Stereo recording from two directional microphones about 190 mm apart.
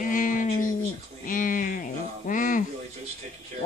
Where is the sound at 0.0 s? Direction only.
45° left (ahead or behind).